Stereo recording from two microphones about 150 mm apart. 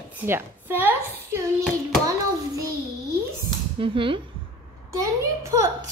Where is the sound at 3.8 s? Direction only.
35° right (ahead or behind).